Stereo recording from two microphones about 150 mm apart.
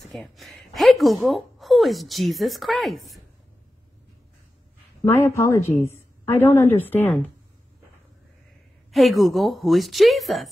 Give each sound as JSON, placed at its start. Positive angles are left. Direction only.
{"t": 0.1, "sound": "a sound", "side_deg": 0}
{"t": 1.2, "sound": "speech", "side_deg": 0}
{"t": 5.1, "sound": "a woman's voice", "side_deg": 20}
{"t": 8.9, "sound": "speech", "side_deg": 0}